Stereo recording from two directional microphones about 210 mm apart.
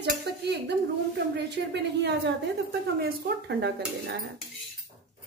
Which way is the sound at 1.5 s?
55° right (ahead or behind).